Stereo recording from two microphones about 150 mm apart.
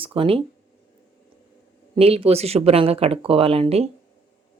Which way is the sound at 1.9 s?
40° right (ahead or behind).